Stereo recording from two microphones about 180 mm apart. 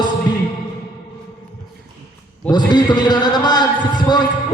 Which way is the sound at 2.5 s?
25° left (ahead or behind).